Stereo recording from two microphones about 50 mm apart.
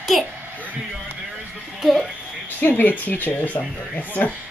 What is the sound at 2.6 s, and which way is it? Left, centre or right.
Speech, left.